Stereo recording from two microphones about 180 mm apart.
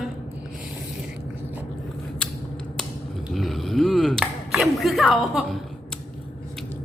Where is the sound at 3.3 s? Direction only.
Centre (ahead or behind).